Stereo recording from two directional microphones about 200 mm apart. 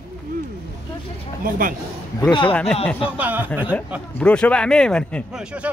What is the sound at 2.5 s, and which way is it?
Speech, 5° left (ahead or behind).